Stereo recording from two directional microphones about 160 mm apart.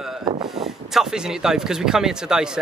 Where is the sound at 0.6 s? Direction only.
5° right (ahead or behind).